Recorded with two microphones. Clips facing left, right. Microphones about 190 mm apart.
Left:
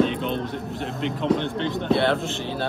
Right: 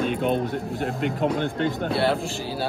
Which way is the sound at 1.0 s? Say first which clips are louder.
Left 2 dB; 50° right (ahead or behind).